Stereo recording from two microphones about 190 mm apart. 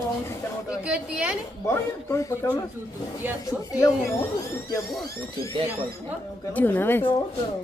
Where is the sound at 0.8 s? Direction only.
5° right (ahead or behind).